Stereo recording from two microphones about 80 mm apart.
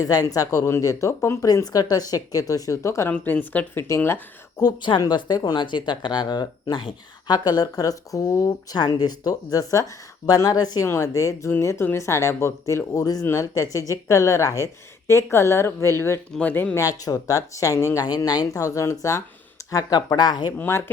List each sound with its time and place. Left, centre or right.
0.0 s speech: left
1.6 s speech: left
3.1 s a woman's voice: left
3.8 s speech: left
4.6 s speech: left
8.7 s speech: left
10.8 s speech: left
16.7 s speech: left
18.2 s speech: left
20.1 s speech: left
20.6 s a woman's voice: left